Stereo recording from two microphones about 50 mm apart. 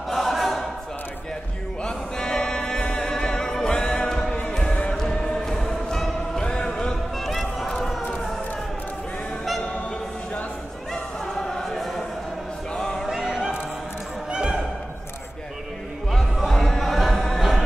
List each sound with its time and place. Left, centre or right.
0.1 s choir: centre
1.8 s music: centre
10.9 s a sound: centre
13.1 s a sound: centre
14.3 s opera: centre
16.1 s music: centre